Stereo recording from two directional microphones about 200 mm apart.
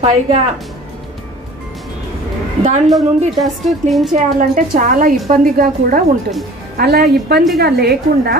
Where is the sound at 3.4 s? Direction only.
Centre (ahead or behind).